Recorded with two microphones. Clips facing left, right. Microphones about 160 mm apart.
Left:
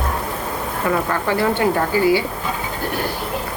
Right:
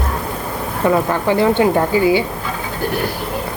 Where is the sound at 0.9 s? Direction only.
20° right (ahead or behind).